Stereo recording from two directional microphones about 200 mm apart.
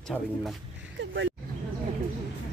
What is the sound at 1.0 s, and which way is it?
Vehicle, 60° right (ahead or behind).